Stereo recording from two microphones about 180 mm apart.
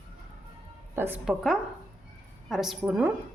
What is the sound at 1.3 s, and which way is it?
A woman's voice, 5° right (ahead or behind).